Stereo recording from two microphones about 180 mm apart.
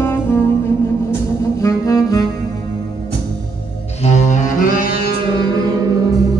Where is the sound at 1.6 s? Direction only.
15° left (ahead or behind).